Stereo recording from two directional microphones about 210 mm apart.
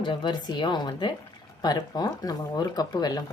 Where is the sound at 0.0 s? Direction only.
20° left (ahead or behind).